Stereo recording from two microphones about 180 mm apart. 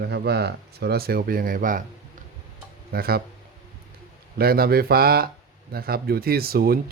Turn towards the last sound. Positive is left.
turn(degrees=-55)  # may be behind; listen again after turning